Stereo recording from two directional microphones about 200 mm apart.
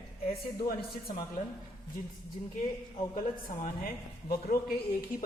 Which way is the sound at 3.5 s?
45° left (ahead or behind).